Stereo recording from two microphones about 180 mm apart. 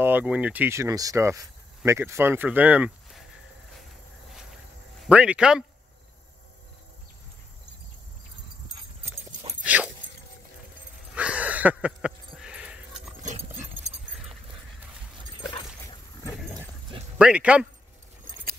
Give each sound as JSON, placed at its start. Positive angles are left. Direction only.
{"t": 0.0, "sound": "speech", "side_deg": -10}
{"t": 5.0, "sound": "speech", "side_deg": -5}
{"t": 9.0, "sound": "dog", "side_deg": -35}
{"t": 9.6, "sound": "dog", "side_deg": -10}
{"t": 11.1, "sound": "a sound", "side_deg": -5}
{"t": 14.1, "sound": "dog", "side_deg": 0}
{"t": 15.4, "sound": "dog", "side_deg": 25}
{"t": 16.3, "sound": "a sound", "side_deg": 0}
{"t": 17.2, "sound": "speech", "side_deg": -5}
{"t": 18.2, "sound": "keys jangling", "side_deg": -50}